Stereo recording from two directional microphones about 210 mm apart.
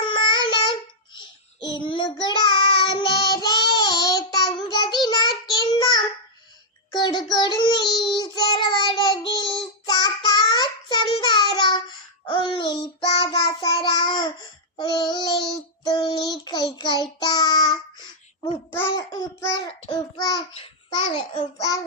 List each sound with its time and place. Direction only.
0.0 s babbling: 20° left (ahead or behind)
5.0 s child singing: 20° left (ahead or behind)